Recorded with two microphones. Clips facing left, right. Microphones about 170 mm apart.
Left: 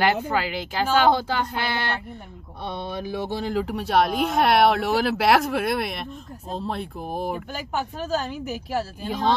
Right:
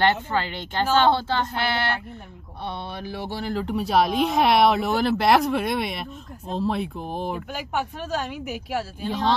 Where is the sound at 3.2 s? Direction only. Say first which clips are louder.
Left 1 dB; 20° left (ahead or behind).